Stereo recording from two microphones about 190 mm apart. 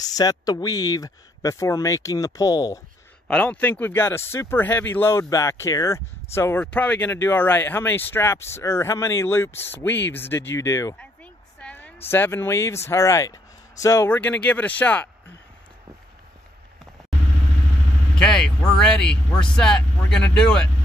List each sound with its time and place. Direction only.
0.0 s speech: 20° left (ahead or behind)
3.3 s speech: 5° left (ahead or behind)
11.6 s a sound: 5° left (ahead or behind)
12.1 s speech: 10° left (ahead or behind)
18.2 s speech: 5° left (ahead or behind)